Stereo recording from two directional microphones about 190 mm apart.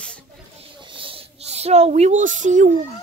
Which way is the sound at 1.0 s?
30° right (ahead or behind).